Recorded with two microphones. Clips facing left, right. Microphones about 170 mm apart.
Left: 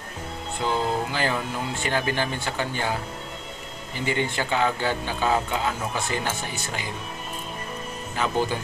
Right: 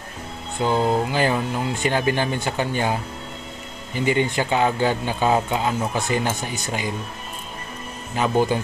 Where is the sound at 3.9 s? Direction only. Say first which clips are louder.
Right 5 dB; 15° right (ahead or behind).